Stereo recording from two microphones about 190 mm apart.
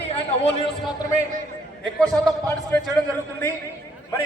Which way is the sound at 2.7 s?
5° left (ahead or behind).